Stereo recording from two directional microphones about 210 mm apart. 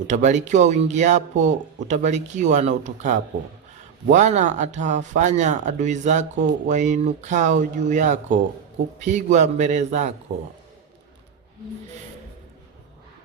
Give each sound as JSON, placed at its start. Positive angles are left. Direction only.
{"t": 0.1, "sound": "speech", "side_deg": -35}